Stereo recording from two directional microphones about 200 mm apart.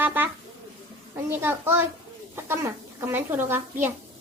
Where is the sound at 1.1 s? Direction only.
10° right (ahead or behind).